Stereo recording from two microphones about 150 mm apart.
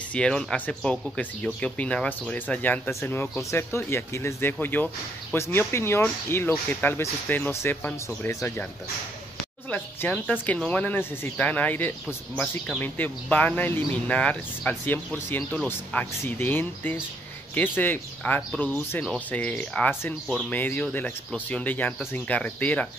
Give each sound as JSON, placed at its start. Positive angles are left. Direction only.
{"t": 0.1, "sound": "speech", "side_deg": 5}
{"t": 9.7, "sound": "speech", "side_deg": 10}
{"t": 20.2, "sound": "speech", "side_deg": 0}
{"t": 20.5, "sound": "speech", "side_deg": 10}